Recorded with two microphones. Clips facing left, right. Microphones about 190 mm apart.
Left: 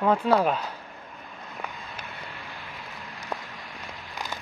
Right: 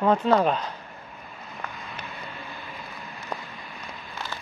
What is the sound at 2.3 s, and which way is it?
Boat, 90° left.